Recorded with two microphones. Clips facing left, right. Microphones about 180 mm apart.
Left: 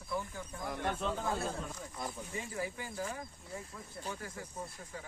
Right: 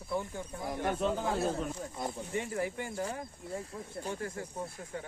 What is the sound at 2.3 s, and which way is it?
Speech, 65° right (ahead or behind).